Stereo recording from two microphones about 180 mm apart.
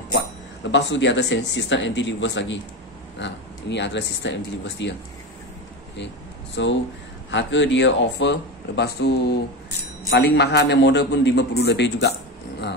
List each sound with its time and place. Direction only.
0.7 s speech: 85° left
6.5 s a man's voice: 90° left; by 12.7 s 65° left (ahead or behind)